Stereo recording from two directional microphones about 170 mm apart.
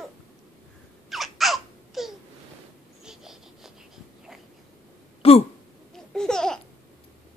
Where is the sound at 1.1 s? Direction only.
Centre (ahead or behind).